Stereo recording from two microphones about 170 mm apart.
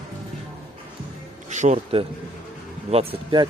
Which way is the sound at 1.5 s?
45° right (ahead or behind).